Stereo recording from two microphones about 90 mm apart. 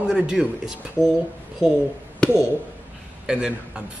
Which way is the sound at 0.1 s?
5° right (ahead or behind).